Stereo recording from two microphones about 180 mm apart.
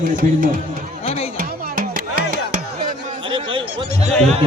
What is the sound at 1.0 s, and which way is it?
Music, 35° left (ahead or behind).